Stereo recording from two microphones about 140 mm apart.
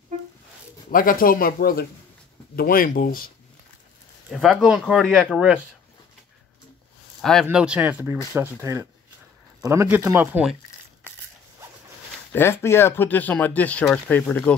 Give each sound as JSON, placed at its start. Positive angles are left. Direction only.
{"t": 0.9, "sound": "speech", "side_deg": 90}
{"t": 4.3, "sound": "speech", "side_deg": 0}
{"t": 7.2, "sound": "speech", "side_deg": 5}
{"t": 7.4, "sound": "speech", "side_deg": -10}
{"t": 12.3, "sound": "speech", "side_deg": 15}